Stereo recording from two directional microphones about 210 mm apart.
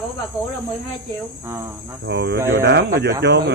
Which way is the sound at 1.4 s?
10° right (ahead or behind).